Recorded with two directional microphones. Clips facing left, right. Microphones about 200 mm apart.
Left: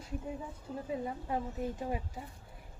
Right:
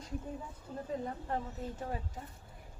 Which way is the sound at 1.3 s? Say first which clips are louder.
Left 2 dB; 10° left (ahead or behind).